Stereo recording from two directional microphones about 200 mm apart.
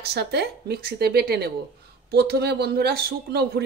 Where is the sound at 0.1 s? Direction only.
55° right (ahead or behind).